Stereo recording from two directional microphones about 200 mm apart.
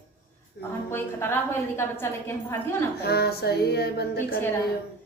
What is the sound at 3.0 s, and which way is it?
Music, 55° left (ahead or behind).